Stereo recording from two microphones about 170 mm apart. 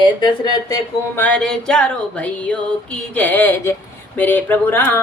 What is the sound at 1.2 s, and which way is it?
Speech, 10° left (ahead or behind).